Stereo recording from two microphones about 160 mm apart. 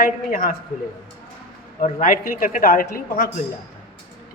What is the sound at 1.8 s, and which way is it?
Speech, 55° left (ahead or behind).